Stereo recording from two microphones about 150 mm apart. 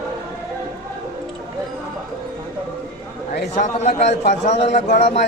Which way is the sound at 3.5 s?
50° left (ahead or behind).